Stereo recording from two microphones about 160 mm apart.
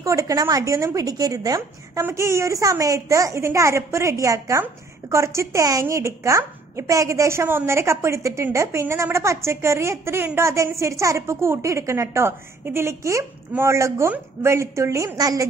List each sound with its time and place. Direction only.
0.0 s a woman's voice: 20° right (ahead or behind)